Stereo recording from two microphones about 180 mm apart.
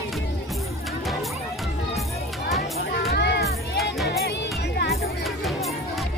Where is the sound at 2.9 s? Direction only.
65° left (ahead or behind).